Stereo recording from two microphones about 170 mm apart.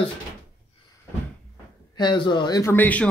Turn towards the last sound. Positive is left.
turn(degrees=10)  # may be behind; listen again after turning